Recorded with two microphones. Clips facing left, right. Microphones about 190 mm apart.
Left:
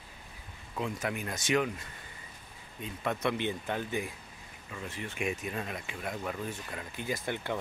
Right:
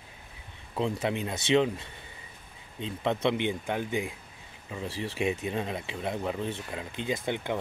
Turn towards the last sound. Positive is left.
turn(degrees=-20)  # may be behind; listen again after turning